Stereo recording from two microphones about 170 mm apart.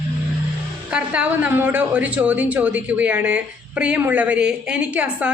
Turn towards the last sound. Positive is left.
turn(degrees=-10)  # may be behind; listen again after turning